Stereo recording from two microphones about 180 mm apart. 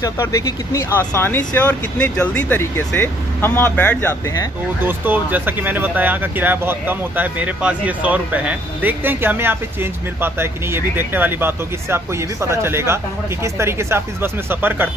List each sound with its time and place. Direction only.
0.0 s speech: 15° left (ahead or behind)
4.8 s speech: 10° right (ahead or behind)